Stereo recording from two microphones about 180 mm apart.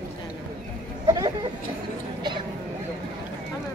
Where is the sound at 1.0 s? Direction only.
20° right (ahead or behind).